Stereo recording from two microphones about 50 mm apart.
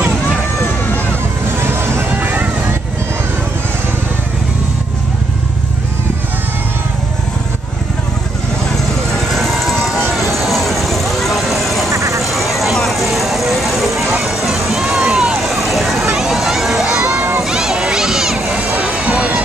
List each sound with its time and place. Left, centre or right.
1.6 s music: right
2.2 s vehicle: right
9.3 s vehicle: centre
9.9 s run: centre
10.4 s vehicle: centre
11.9 s quack: right
12.2 s vehicle: centre
14.2 s music: centre
15.0 s vehicle: centre
16.2 s a sound: centre
16.8 s crowd: centre
17.4 s a sound: centre
18.5 s vehicle: right